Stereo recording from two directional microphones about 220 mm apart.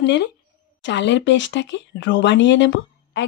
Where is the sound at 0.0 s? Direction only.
50° left (ahead or behind).